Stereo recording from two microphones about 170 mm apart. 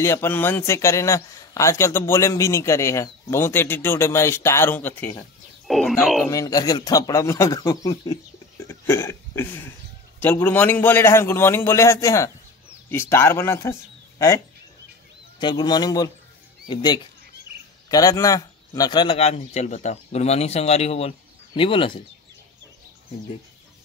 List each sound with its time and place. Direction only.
0.0 s a man's voice: 15° left (ahead or behind)
6.2 s speech: 20° left (ahead or behind)
8.6 s a sound: 15° left (ahead or behind)
10.2 s a man's voice: 10° left (ahead or behind)
15.4 s a man's voice: 25° left (ahead or behind)
19.1 s speech: 40° left (ahead or behind)